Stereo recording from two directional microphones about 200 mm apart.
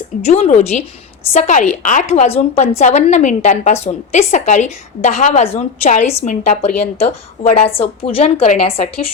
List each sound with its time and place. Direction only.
0.3 s a woman's voice: 35° left (ahead or behind)